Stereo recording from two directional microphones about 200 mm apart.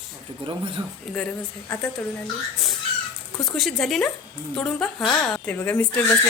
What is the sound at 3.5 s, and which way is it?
A woman's voice, centre (ahead or behind).